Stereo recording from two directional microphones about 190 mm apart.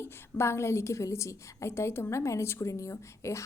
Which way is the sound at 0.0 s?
10° left (ahead or behind).